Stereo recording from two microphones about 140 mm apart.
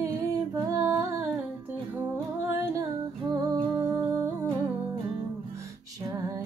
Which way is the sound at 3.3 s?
30° right (ahead or behind).